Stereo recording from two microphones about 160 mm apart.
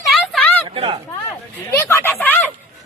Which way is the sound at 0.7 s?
30° right (ahead or behind).